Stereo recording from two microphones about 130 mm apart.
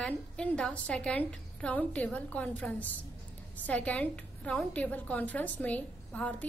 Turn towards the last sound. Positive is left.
turn(degrees=10)  # may be behind; listen again after turning